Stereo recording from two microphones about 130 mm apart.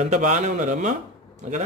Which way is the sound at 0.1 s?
70° right (ahead or behind).